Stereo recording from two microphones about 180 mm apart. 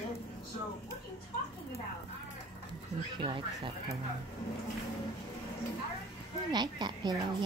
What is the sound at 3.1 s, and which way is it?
Speech, 25° right (ahead or behind).